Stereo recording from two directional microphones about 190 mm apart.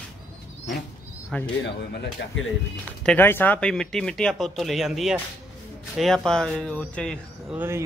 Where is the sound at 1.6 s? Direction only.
65° left (ahead or behind).